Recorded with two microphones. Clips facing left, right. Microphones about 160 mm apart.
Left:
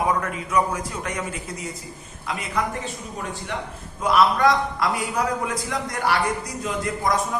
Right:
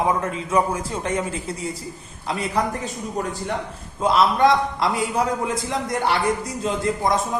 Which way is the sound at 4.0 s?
25° right (ahead or behind).